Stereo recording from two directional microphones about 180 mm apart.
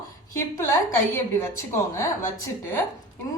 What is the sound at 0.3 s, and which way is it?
A woman's voice, 15° left (ahead or behind).